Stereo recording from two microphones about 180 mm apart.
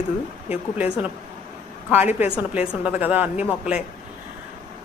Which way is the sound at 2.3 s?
5° right (ahead or behind).